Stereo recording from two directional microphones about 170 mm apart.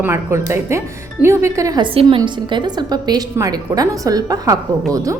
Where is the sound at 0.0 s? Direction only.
15° right (ahead or behind).